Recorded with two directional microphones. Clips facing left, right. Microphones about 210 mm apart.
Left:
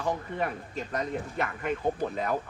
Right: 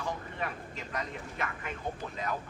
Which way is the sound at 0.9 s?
40° left (ahead or behind).